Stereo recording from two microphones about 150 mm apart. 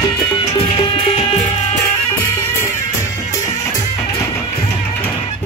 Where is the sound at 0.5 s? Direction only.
40° left (ahead or behind).